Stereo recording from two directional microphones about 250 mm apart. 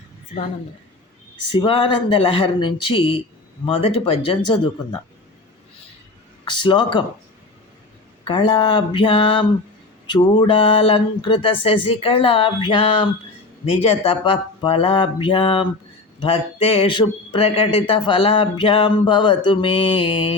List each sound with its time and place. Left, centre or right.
1.5 s speech: left
6.4 s speech: centre
8.2 s speech: centre